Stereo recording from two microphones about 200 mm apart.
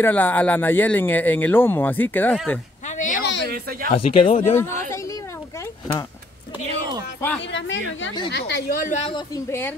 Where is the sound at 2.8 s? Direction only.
40° left (ahead or behind).